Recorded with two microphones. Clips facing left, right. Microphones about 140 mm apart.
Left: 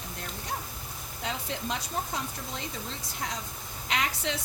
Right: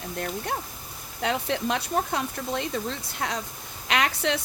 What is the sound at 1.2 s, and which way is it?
Speech, 70° right (ahead or behind).